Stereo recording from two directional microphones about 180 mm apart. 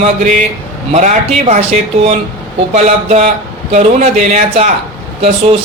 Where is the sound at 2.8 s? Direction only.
40° right (ahead or behind).